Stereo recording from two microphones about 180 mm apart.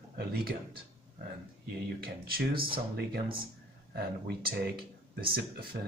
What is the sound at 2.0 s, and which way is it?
Speech, 55° right (ahead or behind).